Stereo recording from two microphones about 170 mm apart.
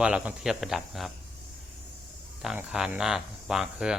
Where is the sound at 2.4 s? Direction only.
5° right (ahead or behind).